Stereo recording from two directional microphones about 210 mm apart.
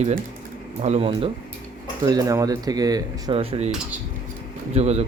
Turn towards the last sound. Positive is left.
turn(degrees=-30)  # may be behind; listen again after turning